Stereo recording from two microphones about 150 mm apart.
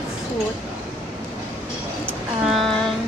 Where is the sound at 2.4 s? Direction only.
Centre (ahead or behind).